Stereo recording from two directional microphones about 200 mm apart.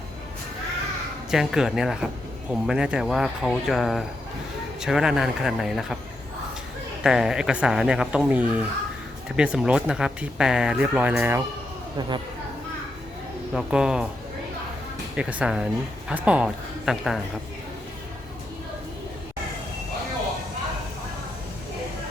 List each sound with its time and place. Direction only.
1.3 s speech: centre (ahead or behind)
7.0 s speech: 5° right (ahead or behind)
11.9 s speech: 20° right (ahead or behind)
13.5 s speech: 5° right (ahead or behind)
15.1 s speech: 5° right (ahead or behind)